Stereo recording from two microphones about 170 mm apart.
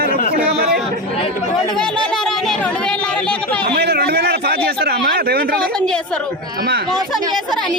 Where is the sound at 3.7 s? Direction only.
70° right (ahead or behind).